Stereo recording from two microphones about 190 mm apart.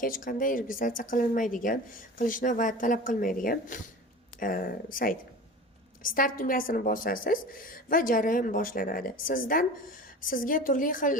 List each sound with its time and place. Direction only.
0.0 s a woman's voice: 45° left (ahead or behind)
6.0 s a woman's voice: 45° left (ahead or behind)